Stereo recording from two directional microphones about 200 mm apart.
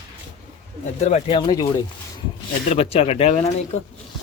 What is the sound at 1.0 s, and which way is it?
Speech, 30° left (ahead or behind).